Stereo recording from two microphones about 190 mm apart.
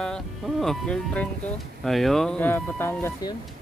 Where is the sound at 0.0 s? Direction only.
Centre (ahead or behind).